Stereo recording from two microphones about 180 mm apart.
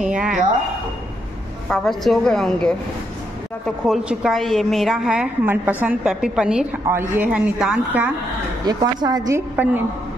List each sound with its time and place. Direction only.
0.0 s a woman's voice: 5° right (ahead or behind)
1.7 s a woman's voice: centre (ahead or behind)
8.6 s a woman's voice: 20° right (ahead or behind)